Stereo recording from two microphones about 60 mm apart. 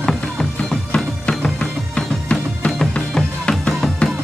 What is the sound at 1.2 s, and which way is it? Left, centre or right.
Music, centre.